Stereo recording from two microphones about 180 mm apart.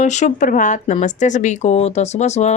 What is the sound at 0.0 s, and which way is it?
Speech, 40° left (ahead or behind).